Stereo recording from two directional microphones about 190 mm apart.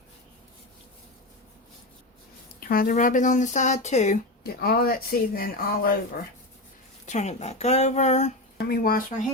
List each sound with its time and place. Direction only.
2.6 s speech: 45° left (ahead or behind)
4.4 s speech: 55° left (ahead or behind)
7.0 s speech: 40° left (ahead or behind)
8.5 s speech: 55° left (ahead or behind)